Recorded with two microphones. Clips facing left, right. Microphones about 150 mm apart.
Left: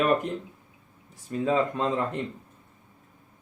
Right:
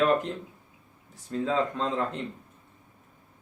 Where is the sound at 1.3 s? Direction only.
15° left (ahead or behind).